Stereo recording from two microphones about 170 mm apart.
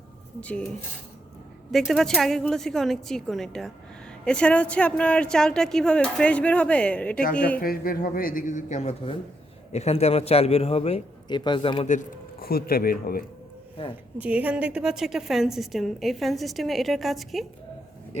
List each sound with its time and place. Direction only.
0.3 s speech: 5° left (ahead or behind)
1.7 s a woman's voice: centre (ahead or behind)
7.6 s a man's voice: 60° left (ahead or behind); by 11.9 s 30° left (ahead or behind)
11.9 s a man's voice: 55° left (ahead or behind)
14.2 s a woman's voice: 10° right (ahead or behind)